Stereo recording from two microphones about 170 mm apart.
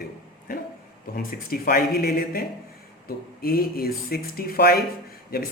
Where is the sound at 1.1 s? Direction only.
60° left (ahead or behind).